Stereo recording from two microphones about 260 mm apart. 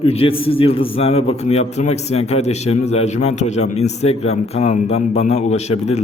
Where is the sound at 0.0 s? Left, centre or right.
Left.